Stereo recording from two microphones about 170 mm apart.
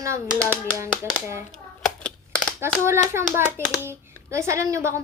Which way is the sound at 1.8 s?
5° left (ahead or behind).